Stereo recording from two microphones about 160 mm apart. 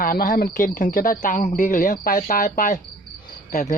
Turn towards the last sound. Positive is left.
turn(degrees=50)  # may be behind; listen again after turning